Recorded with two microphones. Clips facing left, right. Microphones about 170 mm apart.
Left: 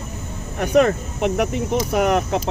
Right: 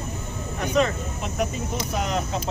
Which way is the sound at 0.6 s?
60° left (ahead or behind).